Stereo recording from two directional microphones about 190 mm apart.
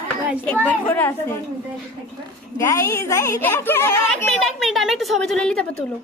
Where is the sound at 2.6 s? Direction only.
15° left (ahead or behind).